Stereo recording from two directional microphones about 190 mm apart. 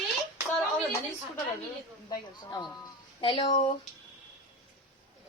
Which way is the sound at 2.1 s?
20° left (ahead or behind).